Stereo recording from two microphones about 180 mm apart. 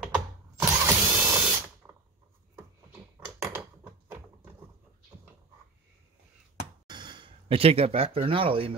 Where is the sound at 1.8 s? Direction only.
10° right (ahead or behind).